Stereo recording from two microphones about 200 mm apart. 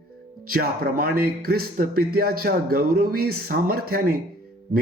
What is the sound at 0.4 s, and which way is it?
Speech, 50° right (ahead or behind).